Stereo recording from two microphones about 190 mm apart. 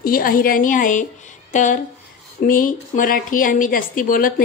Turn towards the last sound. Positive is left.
turn(degrees=45)  # may be behind; listen again after turning